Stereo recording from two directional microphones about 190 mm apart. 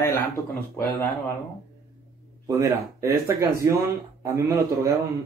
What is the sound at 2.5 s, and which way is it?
Speech, 15° right (ahead or behind).